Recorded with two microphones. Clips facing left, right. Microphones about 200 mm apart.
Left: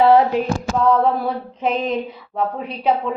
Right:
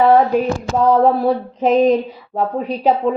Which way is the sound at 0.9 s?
40° right (ahead or behind).